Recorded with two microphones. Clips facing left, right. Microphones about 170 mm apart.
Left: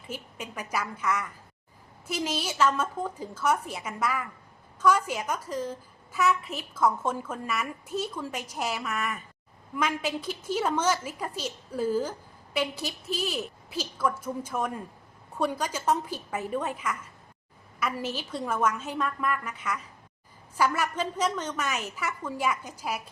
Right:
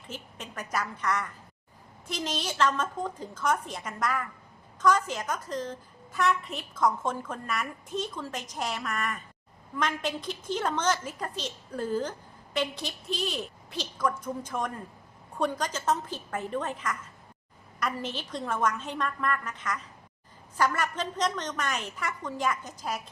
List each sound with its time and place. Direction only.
0.1 s a woman's voice: 10° left (ahead or behind)